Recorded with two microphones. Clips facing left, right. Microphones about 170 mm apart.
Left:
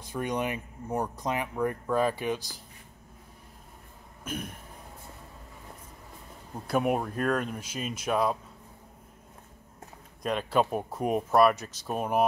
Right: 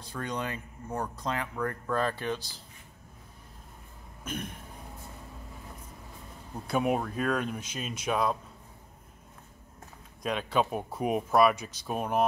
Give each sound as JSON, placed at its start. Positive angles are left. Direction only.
{"t": 0.1, "sound": "speech", "side_deg": 15}
{"t": 4.2, "sound": "throat clearing", "side_deg": 5}
{"t": 6.7, "sound": "speech", "side_deg": 5}
{"t": 10.2, "sound": "speech", "side_deg": 0}